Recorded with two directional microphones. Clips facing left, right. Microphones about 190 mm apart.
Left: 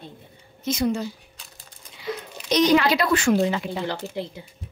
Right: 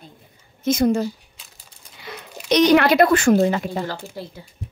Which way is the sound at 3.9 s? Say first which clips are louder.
Left 2 dB; 20° left (ahead or behind).